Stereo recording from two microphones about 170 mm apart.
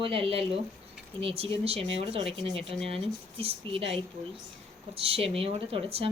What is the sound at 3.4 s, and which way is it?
Speech, 35° right (ahead or behind).